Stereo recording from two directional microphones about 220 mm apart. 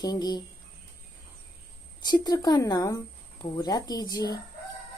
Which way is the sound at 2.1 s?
20° left (ahead or behind).